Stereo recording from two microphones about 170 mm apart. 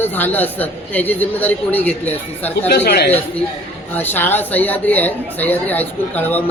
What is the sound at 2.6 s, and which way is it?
Speech, 75° left (ahead or behind).